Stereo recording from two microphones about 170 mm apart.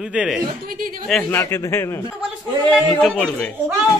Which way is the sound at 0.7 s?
55° right (ahead or behind).